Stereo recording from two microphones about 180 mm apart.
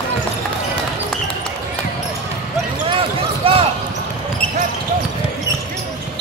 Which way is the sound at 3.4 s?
30° right (ahead or behind).